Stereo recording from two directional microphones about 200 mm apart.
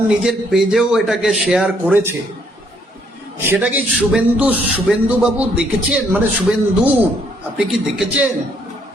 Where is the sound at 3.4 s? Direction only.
10° right (ahead or behind).